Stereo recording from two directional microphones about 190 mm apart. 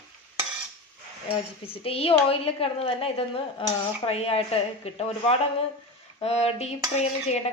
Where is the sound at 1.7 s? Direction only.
30° left (ahead or behind).